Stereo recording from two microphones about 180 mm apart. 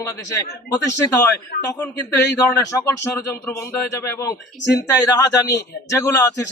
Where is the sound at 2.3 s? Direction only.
15° left (ahead or behind).